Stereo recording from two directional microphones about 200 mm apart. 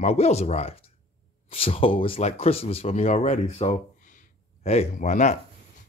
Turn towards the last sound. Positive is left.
turn(degrees=35)  # may be behind; listen again after turning